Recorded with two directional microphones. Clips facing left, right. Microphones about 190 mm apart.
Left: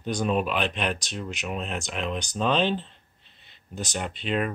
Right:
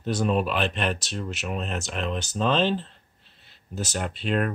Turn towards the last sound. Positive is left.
turn(degrees=0)  # may be behind; listen again after turning